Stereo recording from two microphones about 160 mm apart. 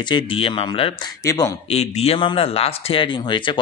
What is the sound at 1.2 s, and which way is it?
Speech, 20° left (ahead or behind).